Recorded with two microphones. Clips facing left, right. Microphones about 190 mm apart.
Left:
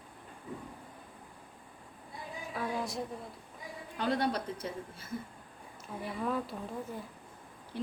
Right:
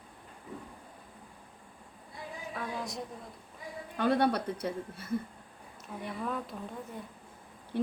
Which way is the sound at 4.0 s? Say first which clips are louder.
Right 4 dB; 60° right (ahead or behind).